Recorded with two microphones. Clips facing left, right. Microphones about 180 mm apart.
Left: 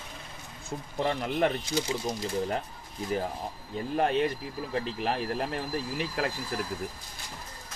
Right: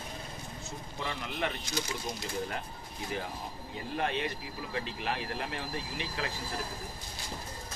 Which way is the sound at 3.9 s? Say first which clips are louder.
Left 7 dB; 40° left (ahead or behind).